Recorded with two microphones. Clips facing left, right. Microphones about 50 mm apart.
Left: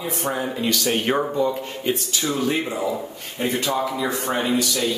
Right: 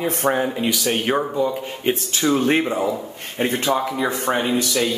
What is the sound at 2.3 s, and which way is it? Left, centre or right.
A man's voice, right.